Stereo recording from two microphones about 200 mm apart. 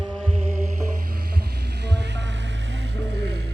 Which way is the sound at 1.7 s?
55° right (ahead or behind).